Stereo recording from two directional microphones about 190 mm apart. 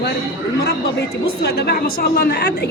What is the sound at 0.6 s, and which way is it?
A woman's voice, 60° left (ahead or behind).